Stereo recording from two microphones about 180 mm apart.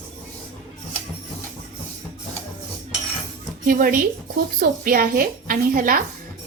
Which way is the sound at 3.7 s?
50° right (ahead or behind).